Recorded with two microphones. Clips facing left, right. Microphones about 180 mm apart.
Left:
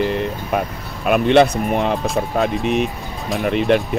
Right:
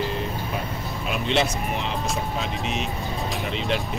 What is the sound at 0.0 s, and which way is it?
Vehicle, 65° left (ahead or behind).